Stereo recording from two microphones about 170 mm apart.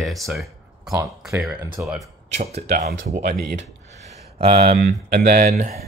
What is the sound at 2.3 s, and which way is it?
Speech, 35° right (ahead or behind).